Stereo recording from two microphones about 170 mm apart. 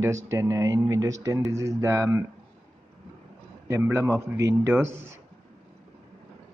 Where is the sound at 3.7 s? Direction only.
15° right (ahead or behind).